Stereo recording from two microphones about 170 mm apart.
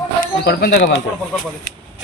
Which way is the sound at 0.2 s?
70° left (ahead or behind).